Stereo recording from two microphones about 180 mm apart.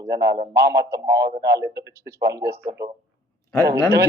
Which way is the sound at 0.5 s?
15° right (ahead or behind).